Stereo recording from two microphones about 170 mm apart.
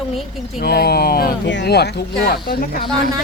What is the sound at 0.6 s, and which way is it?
Speech, 65° left (ahead or behind).